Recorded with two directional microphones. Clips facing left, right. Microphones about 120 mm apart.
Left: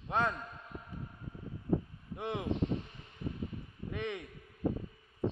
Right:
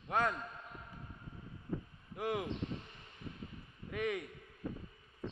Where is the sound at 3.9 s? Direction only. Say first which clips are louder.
Right 2 dB; 25° left (ahead or behind).